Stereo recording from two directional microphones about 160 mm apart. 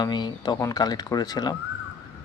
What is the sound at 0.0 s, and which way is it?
Speech, 25° left (ahead or behind).